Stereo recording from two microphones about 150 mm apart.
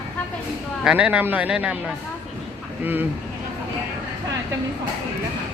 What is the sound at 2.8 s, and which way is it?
Speech, 10° right (ahead or behind).